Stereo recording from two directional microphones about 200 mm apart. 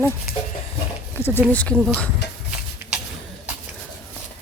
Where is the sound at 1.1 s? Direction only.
10° left (ahead or behind).